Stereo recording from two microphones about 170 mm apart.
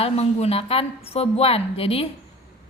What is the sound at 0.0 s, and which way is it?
A woman's voice, 35° left (ahead or behind).